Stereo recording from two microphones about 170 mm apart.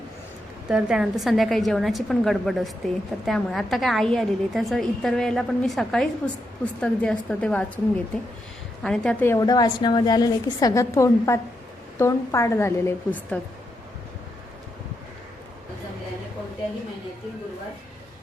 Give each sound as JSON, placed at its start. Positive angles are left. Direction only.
{"t": 0.7, "sound": "a woman's voice", "side_deg": -5}